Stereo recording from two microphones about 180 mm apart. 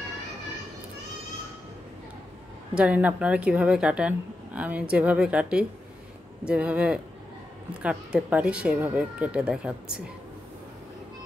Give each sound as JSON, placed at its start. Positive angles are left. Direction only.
{"t": 2.7, "sound": "speech", "side_deg": -5}